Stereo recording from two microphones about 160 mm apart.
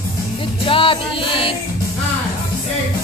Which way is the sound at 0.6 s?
35° left (ahead or behind).